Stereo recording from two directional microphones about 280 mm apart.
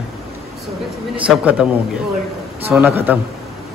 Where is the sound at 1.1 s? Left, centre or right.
Centre.